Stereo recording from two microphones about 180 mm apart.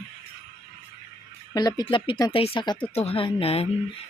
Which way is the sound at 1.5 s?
20° left (ahead or behind).